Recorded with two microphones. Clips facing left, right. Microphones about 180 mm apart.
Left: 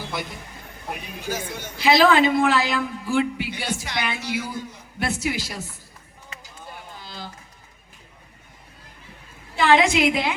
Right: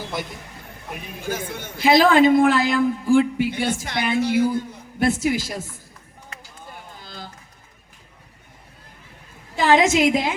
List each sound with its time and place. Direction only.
1.2 s a man's voice: 55° right (ahead or behind)
7.0 s a sound: 50° right (ahead or behind)
9.6 s a woman's voice: 40° right (ahead or behind)